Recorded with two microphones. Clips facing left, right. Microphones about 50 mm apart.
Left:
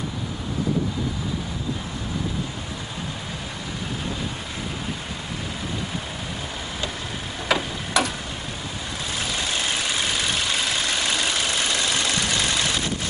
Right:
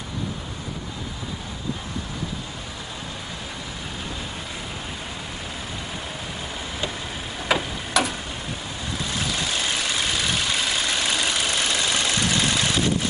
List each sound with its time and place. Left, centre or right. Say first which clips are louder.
7.4 s tick-tock: even; centre
9.2 s vehicle: left 1 dB; centre